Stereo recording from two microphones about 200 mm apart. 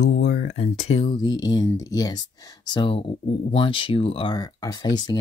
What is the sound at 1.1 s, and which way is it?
Speech, 20° left (ahead or behind).